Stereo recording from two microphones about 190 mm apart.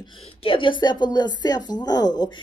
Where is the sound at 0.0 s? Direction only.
25° left (ahead or behind).